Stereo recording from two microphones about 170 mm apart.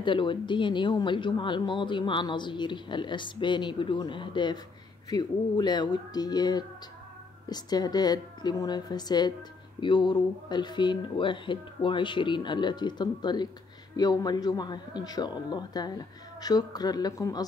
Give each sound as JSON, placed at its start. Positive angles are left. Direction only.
{"t": 0.0, "sound": "speech", "side_deg": 30}